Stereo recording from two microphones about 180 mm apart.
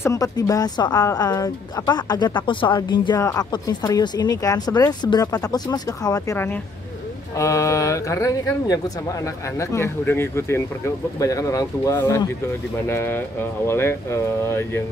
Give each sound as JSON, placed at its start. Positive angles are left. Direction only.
{"t": 0.0, "sound": "speech", "side_deg": 20}